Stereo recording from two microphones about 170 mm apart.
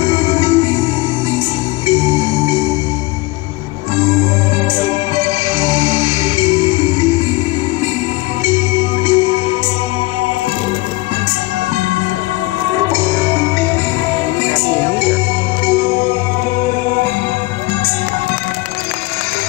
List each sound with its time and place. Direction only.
0.0 s music: 25° left (ahead or behind)
1.9 s music: 25° left (ahead or behind)
4.7 s music: 25° left (ahead or behind)
8.5 s music: 25° left (ahead or behind)
13.2 s music: 15° left (ahead or behind)